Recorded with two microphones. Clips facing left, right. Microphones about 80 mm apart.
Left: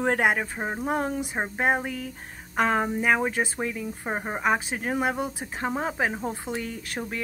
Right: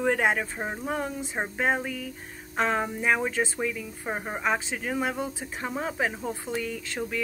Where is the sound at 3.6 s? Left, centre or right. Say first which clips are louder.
Even; left.